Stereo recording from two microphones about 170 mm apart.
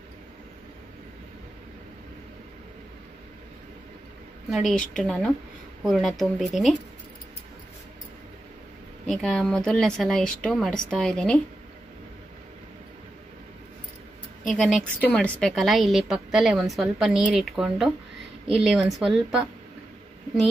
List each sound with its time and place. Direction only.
4.5 s a woman's voice: centre (ahead or behind)
9.0 s a woman's voice: centre (ahead or behind)
14.4 s a woman's voice: centre (ahead or behind)